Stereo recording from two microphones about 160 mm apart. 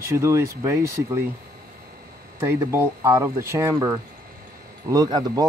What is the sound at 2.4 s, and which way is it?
Speech, 15° right (ahead or behind).